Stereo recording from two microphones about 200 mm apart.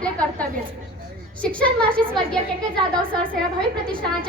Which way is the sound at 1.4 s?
5° left (ahead or behind).